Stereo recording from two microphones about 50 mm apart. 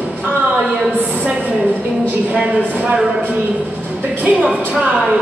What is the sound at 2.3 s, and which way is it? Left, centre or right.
Speech, right.